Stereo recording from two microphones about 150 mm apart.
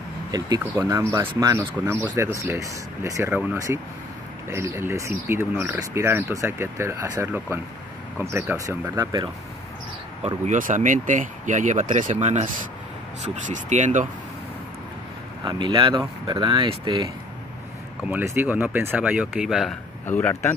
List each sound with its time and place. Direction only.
0.3 s speech: 25° right (ahead or behind)
10.2 s speech: 50° right (ahead or behind)
15.4 s speech: 30° right (ahead or behind)
18.0 s speech: 15° right (ahead or behind)
20.1 s speech: 10° left (ahead or behind)